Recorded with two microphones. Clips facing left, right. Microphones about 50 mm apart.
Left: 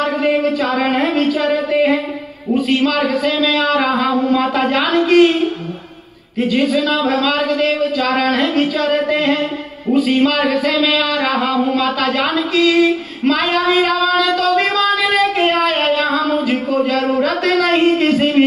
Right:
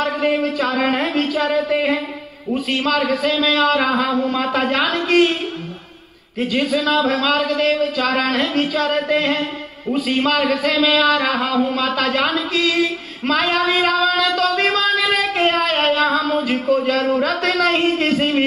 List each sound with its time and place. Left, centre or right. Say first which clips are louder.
0.0 s a sound: left 3 dB; centre
0.7 s speech: left 3 dB; centre
1.3 s music: left 2 dB; left
6.8 s speech: left 2 dB; centre
10.6 s speech: left 1 dB; centre
18.0 s a sound: left 4 dB; centre